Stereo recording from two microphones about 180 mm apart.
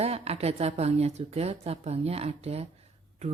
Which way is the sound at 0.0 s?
35° right (ahead or behind).